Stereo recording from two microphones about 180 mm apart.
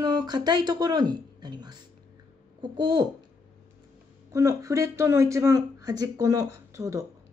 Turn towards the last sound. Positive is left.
turn(degrees=-15)  # may be behind; listen again after turning